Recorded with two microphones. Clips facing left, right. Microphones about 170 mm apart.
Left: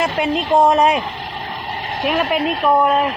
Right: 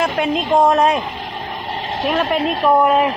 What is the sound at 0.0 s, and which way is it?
A woman's voice, centre (ahead or behind).